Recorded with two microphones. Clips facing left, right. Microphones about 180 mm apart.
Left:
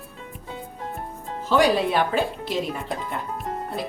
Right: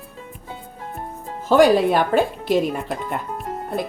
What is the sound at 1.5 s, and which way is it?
Speech, 50° right (ahead or behind).